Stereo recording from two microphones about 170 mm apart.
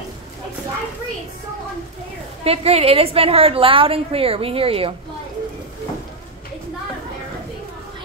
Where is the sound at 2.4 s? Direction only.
35° right (ahead or behind).